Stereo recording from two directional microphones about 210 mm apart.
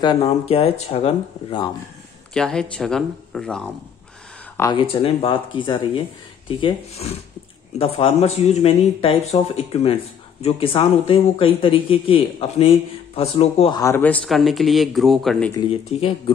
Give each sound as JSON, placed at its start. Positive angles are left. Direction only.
{"t": 0.0, "sound": "speech", "side_deg": 25}
{"t": 2.3, "sound": "speech", "side_deg": 5}
{"t": 4.6, "sound": "speech", "side_deg": 15}
{"t": 13.7, "sound": "speech", "side_deg": 15}
{"t": 15.9, "sound": "speech", "side_deg": 30}